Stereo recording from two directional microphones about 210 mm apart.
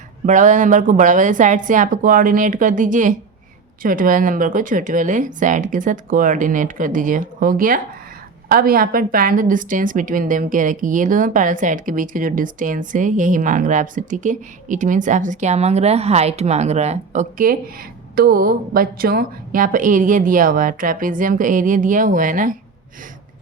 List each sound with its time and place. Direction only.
0.3 s a woman's voice: 35° right (ahead or behind)